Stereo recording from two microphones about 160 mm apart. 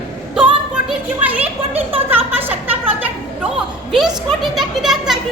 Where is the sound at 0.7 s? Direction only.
10° right (ahead or behind).